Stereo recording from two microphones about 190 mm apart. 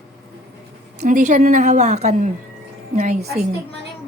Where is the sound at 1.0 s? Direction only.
40° right (ahead or behind).